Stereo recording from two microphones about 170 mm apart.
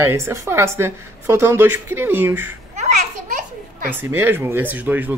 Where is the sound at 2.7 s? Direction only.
45° right (ahead or behind).